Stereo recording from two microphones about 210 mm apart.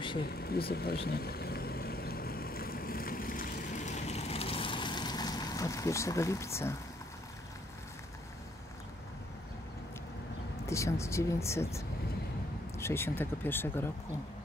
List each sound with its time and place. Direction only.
0.2 s speech: 45° left (ahead or behind)
1.0 s vehicle: 50° left (ahead or behind); by 6.8 s 15° left (ahead or behind)
10.7 s speech: 15° left (ahead or behind)